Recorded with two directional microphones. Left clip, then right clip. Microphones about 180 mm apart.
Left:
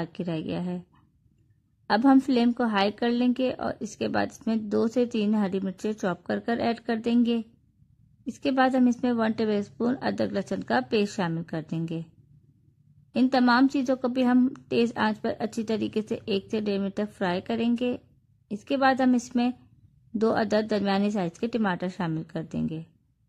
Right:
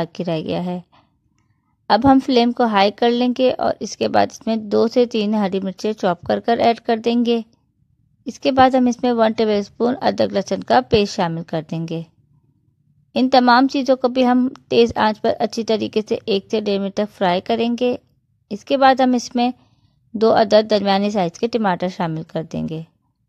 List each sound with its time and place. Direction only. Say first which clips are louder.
0.0 s a woman's voice: right 10 dB; 35° right (ahead or behind)
13.1 s a woman's voice: right 10 dB; 35° right (ahead or behind)